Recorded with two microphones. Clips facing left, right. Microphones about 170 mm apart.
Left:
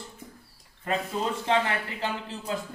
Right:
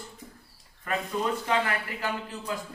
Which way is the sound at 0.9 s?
25° left (ahead or behind).